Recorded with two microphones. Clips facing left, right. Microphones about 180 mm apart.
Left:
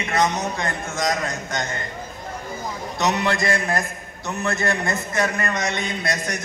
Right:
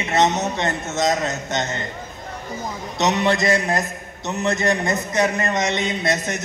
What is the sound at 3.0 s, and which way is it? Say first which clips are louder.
A man's voice: right 3 dB; 20° right (ahead or behind).